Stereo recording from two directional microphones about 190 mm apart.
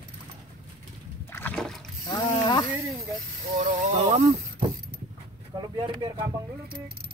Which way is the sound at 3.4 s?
35° right (ahead or behind).